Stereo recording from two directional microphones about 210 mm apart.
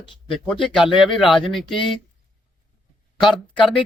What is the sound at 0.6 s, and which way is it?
Speech, 25° left (ahead or behind).